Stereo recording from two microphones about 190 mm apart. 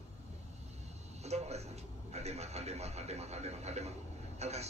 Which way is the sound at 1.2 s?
35° right (ahead or behind).